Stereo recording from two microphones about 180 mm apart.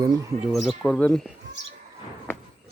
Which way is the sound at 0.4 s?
5° right (ahead or behind).